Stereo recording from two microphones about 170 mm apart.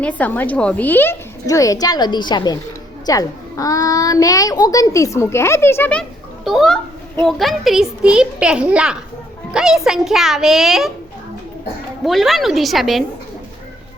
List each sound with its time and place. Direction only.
0.0 s a child's voice: 10° left (ahead or behind)
12.0 s a child's voice: centre (ahead or behind)